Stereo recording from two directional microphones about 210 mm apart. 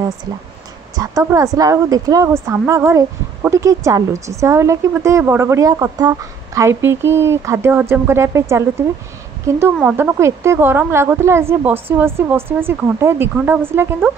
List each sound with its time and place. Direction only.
0.9 s a woman's voice: 15° right (ahead or behind)